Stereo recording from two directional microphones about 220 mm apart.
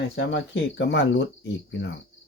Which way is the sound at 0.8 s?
50° left (ahead or behind).